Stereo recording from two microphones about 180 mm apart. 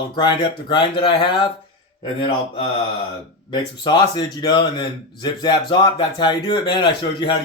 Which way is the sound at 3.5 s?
25° left (ahead or behind).